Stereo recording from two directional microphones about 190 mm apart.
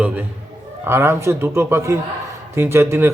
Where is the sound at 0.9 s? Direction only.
10° right (ahead or behind).